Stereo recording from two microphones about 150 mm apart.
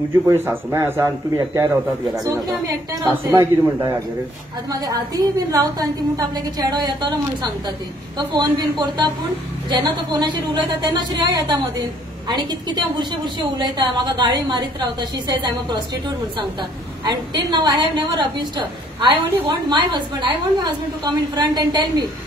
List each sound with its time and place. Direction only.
0.3 s a woman's voice: 15° right (ahead or behind)
17.0 s a woman's voice: 30° right (ahead or behind)
19.7 s a woman's voice: 30° right (ahead or behind)